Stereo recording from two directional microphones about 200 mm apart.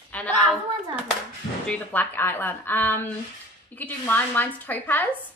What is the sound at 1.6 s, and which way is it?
A woman's voice, 5° left (ahead or behind).